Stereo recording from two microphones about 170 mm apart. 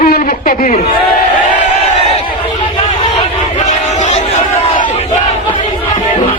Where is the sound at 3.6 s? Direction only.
45° left (ahead or behind).